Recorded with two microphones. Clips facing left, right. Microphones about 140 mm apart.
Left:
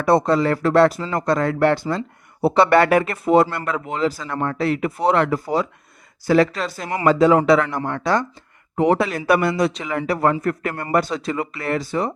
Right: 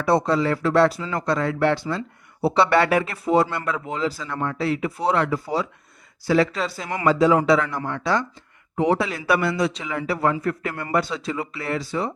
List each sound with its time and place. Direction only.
0.0 s speech: 50° left (ahead or behind)